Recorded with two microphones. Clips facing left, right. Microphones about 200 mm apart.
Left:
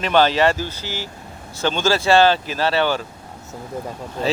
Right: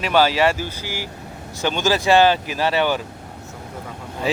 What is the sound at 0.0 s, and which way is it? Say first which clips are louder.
Speech: left 1 dB; 5° right (ahead or behind).